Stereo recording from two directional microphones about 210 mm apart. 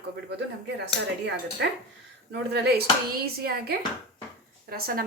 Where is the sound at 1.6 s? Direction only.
55° right (ahead or behind).